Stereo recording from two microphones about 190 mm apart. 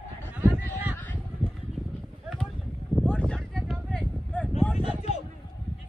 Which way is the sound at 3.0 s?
5° left (ahead or behind).